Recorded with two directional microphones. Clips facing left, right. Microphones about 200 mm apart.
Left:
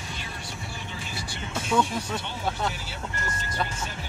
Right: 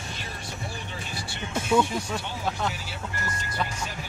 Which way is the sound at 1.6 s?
10° right (ahead or behind).